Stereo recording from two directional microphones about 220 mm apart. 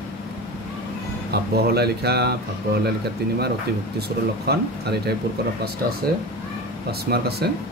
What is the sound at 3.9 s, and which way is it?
Speech, 45° right (ahead or behind).